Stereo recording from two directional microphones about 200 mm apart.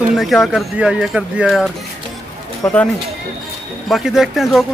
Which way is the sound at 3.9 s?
Centre (ahead or behind).